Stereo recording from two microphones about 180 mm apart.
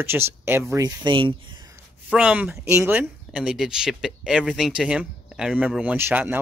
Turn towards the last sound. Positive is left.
turn(degrees=-10)  # may be behind; listen again after turning